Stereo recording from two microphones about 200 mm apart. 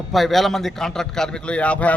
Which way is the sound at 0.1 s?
Centre (ahead or behind).